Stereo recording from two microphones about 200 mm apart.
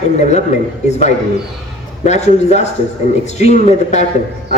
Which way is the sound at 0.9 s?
35° left (ahead or behind).